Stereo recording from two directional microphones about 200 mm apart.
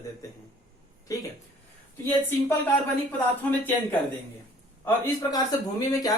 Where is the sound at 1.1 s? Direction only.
15° left (ahead or behind).